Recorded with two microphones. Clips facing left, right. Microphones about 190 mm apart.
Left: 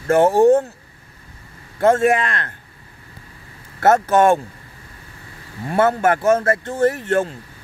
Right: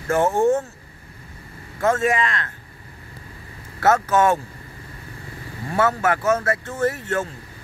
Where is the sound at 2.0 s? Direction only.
55° left (ahead or behind).